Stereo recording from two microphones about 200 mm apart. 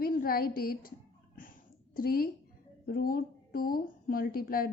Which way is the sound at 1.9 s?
50° left (ahead or behind).